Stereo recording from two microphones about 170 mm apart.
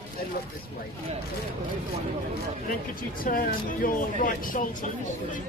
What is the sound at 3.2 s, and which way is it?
Speech, 55° left (ahead or behind).